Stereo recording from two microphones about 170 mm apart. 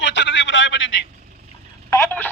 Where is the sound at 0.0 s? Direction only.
90° left.